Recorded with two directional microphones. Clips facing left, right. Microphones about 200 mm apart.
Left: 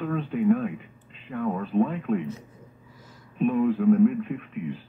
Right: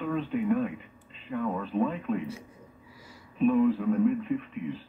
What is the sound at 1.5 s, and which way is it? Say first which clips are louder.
Speech: left 4 dB; 50° left (ahead or behind).